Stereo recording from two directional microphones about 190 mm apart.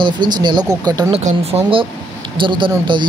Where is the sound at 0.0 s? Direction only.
25° right (ahead or behind).